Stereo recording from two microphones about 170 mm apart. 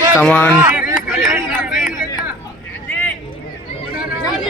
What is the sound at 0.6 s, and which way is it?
Chop, 10° right (ahead or behind).